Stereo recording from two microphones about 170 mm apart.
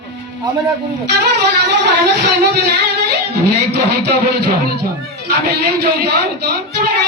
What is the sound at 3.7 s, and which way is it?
Speech, 75° right (ahead or behind).